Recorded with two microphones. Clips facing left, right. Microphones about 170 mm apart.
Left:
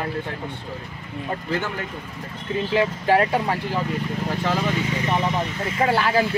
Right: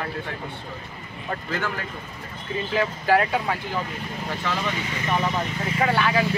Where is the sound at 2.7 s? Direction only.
25° left (ahead or behind).